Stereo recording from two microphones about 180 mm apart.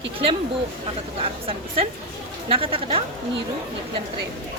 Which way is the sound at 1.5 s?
30° right (ahead or behind).